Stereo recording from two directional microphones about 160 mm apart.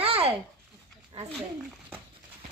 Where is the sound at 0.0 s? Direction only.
35° right (ahead or behind).